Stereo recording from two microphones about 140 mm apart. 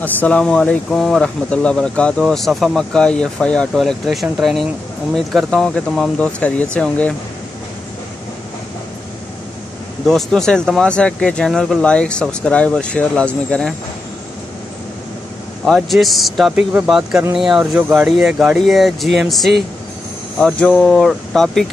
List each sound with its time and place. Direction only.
0.0 s speech: 10° left (ahead or behind)
10.0 s speech: 5° left (ahead or behind)
15.6 s speech: centre (ahead or behind)